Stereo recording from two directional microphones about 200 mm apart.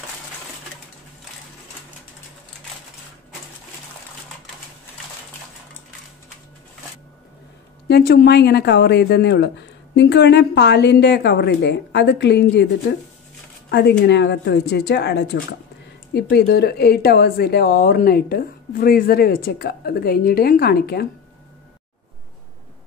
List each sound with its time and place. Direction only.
7.9 s a woman's voice: 50° left (ahead or behind)
13.7 s a woman's voice: 55° left (ahead or behind)